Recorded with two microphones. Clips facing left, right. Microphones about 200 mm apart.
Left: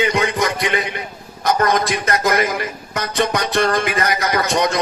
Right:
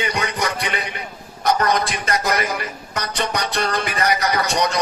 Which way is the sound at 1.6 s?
45° left (ahead or behind).